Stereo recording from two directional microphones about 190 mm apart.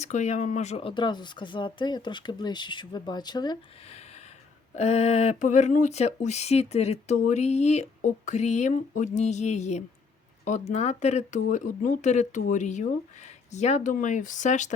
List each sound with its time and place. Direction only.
0.0 s speech: 40° left (ahead or behind); by 3.6 s 20° left (ahead or behind)
3.8 s a sound: 35° left (ahead or behind)
4.7 s speech: 35° left (ahead or behind)